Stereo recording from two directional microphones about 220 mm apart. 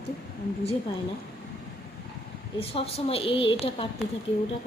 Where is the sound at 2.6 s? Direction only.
25° left (ahead or behind).